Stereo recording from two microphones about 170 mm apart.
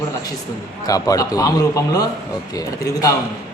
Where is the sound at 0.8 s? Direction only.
20° left (ahead or behind).